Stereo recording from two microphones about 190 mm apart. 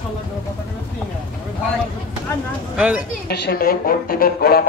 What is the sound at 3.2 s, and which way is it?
A woman's voice, 55° left (ahead or behind).